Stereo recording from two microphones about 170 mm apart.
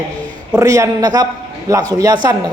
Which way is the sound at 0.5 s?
20° right (ahead or behind).